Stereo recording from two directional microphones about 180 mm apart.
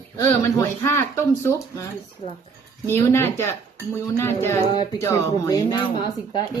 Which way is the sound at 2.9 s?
15° left (ahead or behind).